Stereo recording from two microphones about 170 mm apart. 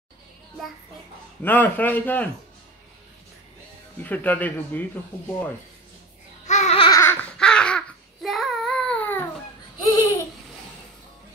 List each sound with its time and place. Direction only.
1.4 s speech: 10° left (ahead or behind)
4.0 s speech: 10° left (ahead or behind)
6.4 s babbling: 45° left (ahead or behind)
6.9 s baby cry: 15° left (ahead or behind)
7.2 s babbling: 5° left (ahead or behind)